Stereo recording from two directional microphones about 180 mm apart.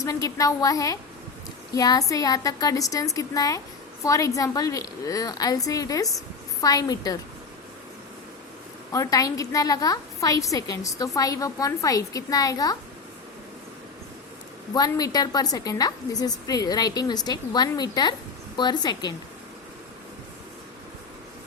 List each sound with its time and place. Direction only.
0.0 s a woman's voice: 20° left (ahead or behind)
8.9 s a woman's voice: 20° left (ahead or behind)
14.7 s a woman's voice: 20° left (ahead or behind)